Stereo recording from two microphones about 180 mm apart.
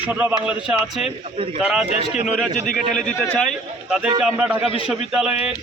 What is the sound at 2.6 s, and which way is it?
Speech, 45° left (ahead or behind).